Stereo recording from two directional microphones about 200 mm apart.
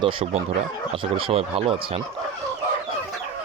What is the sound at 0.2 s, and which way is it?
Speech, 25° right (ahead or behind).